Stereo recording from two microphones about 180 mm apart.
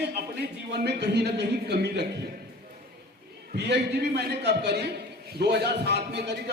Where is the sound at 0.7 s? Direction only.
70° right (ahead or behind).